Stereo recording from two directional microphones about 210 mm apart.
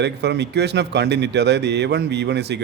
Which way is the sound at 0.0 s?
55° right (ahead or behind).